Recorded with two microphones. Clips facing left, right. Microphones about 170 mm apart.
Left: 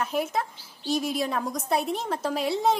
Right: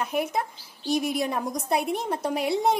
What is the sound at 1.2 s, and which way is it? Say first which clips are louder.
A woman's voice: right 1 dB; 15° right (ahead or behind).